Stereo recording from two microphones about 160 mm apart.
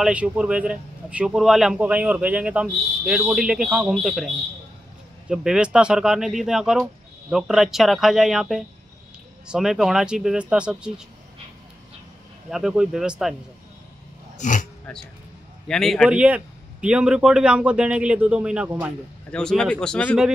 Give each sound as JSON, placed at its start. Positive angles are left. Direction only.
{"t": 0.0, "sound": "a man's voice", "side_deg": -10}
{"t": 5.3, "sound": "speech", "side_deg": -5}
{"t": 12.4, "sound": "speech", "side_deg": -5}
{"t": 14.4, "sound": "speech", "side_deg": 55}
{"t": 15.7, "sound": "a man's voice", "side_deg": 0}
{"t": 19.3, "sound": "speech", "side_deg": 5}